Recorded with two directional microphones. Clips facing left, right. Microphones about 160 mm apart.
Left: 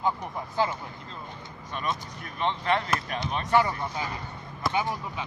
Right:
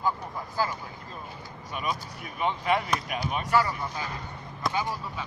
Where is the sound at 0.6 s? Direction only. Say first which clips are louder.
Left 2 dB; 25° left (ahead or behind).